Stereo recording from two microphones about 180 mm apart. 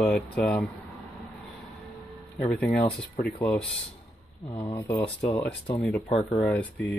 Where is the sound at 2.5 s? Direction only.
5° left (ahead or behind).